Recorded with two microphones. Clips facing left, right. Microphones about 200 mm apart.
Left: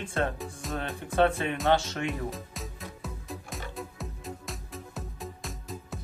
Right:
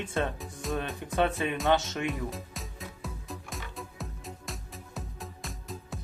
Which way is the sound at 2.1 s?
Centre (ahead or behind).